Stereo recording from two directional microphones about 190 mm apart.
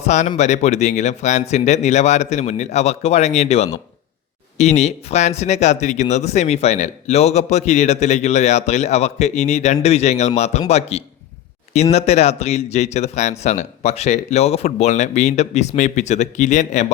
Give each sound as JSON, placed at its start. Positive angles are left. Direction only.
{"t": 0.0, "sound": "speech", "side_deg": 40}